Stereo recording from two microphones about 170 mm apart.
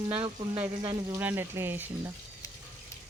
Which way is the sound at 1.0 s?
15° right (ahead or behind).